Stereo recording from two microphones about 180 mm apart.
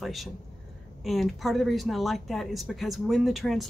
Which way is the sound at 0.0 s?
Centre (ahead or behind).